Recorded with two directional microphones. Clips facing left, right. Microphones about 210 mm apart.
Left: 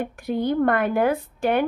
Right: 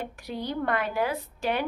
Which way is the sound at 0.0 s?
55° left (ahead or behind).